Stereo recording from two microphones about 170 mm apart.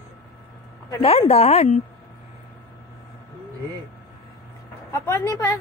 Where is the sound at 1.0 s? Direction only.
35° left (ahead or behind).